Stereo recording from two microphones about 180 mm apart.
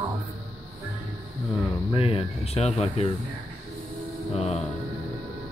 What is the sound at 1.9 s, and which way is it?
Speech, 30° left (ahead or behind).